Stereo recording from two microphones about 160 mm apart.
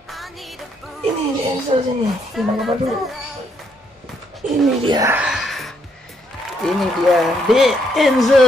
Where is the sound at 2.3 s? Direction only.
Centre (ahead or behind).